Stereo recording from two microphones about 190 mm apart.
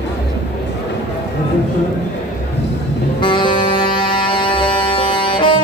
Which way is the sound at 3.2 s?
25° left (ahead or behind).